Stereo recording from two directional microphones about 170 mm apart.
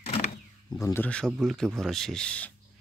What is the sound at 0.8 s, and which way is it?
Speech, 20° left (ahead or behind).